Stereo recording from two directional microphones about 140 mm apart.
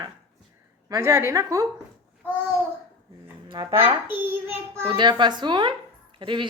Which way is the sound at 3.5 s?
30° right (ahead or behind).